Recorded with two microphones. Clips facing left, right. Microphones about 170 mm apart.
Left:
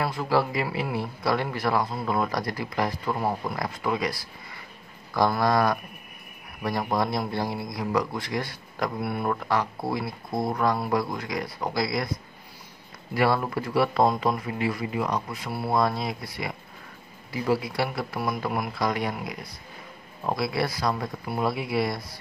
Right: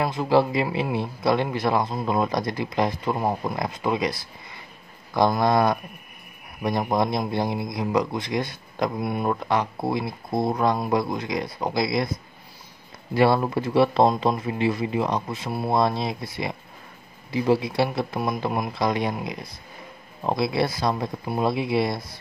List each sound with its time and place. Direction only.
0.0 s a man's voice: 20° right (ahead or behind)
13.1 s a man's voice: 25° right (ahead or behind)